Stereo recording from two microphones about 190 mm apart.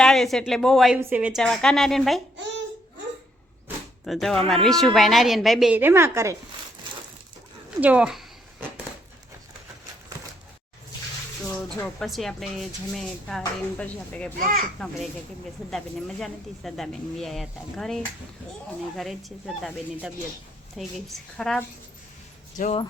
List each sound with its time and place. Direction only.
0.0 s speech: centre (ahead or behind)
4.0 s speech: centre (ahead or behind); by 6.3 s 15° right (ahead or behind)
7.8 s speech: 5° right (ahead or behind)
11.8 s speech: centre (ahead or behind)
14.3 s a child's voice: 45° right (ahead or behind)
14.8 s speech: centre (ahead or behind)
22.5 s speech: 40° left (ahead or behind)